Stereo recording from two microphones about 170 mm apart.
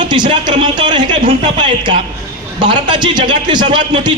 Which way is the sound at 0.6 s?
25° right (ahead or behind).